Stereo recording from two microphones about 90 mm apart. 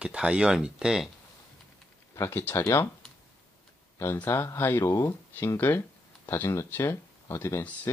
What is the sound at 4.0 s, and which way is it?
Speech, 30° left (ahead or behind).